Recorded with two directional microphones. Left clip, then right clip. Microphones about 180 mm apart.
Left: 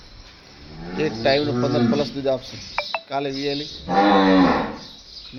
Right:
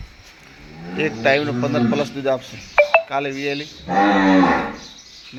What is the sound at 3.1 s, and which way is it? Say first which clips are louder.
Speech: right 2 dB; centre (ahead or behind).